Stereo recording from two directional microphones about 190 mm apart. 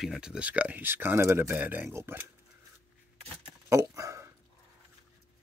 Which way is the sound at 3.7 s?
15° right (ahead or behind).